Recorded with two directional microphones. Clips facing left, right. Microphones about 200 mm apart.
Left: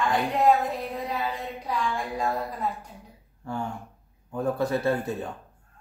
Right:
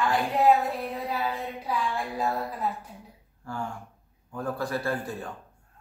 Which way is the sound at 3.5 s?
20° left (ahead or behind).